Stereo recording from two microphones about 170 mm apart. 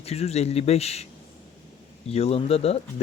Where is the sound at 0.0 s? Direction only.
40° left (ahead or behind).